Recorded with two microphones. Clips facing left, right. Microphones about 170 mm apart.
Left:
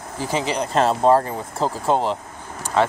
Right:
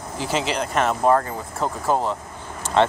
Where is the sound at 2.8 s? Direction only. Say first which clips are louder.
Right 1 dB; 5° left (ahead or behind).